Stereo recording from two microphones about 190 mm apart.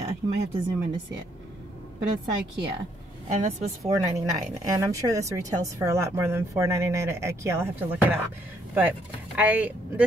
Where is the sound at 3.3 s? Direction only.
35° right (ahead or behind).